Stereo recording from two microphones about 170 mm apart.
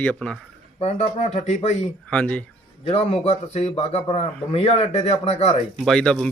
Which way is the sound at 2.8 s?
35° left (ahead or behind).